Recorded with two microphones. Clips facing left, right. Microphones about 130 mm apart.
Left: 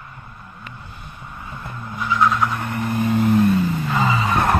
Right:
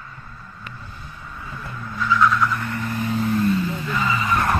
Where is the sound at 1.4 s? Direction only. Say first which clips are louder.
Left 1 dB; 20° left (ahead or behind).